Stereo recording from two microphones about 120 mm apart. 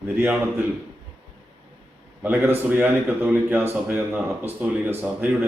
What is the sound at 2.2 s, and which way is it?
Speech, 15° right (ahead or behind).